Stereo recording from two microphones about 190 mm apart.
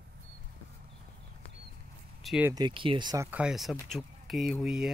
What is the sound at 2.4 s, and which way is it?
Speech, 20° right (ahead or behind).